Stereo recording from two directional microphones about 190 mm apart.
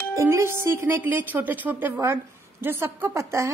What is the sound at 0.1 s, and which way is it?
A woman's voice, 15° right (ahead or behind).